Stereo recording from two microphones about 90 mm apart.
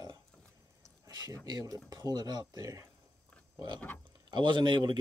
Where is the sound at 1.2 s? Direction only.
50° right (ahead or behind).